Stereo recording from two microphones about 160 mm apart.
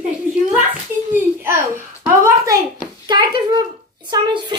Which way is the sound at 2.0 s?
20° right (ahead or behind).